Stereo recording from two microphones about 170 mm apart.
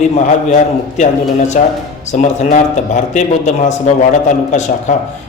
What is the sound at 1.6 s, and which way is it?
A man's voice, 50° left (ahead or behind).